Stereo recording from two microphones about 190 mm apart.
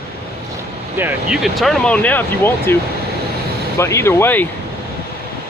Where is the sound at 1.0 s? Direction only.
5° right (ahead or behind).